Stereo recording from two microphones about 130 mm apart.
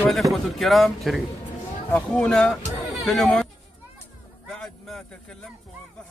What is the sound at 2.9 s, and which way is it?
Chatter, centre (ahead or behind).